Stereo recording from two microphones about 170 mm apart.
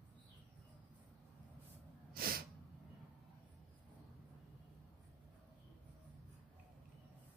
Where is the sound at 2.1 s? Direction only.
60° right (ahead or behind).